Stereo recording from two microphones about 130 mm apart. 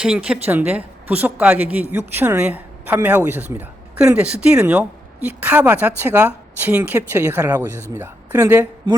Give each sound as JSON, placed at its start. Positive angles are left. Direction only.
{"t": 0.0, "sound": "a woman's voice", "side_deg": -5}